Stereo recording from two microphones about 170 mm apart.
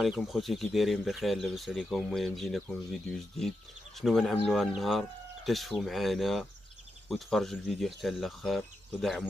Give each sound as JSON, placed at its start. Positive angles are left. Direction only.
{"t": 0.0, "sound": "speech", "side_deg": 0}